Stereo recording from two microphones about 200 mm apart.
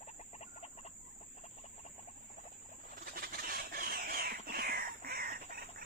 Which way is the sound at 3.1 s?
45° right (ahead or behind).